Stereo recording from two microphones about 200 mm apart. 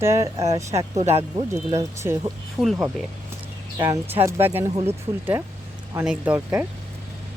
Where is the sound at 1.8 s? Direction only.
15° right (ahead or behind).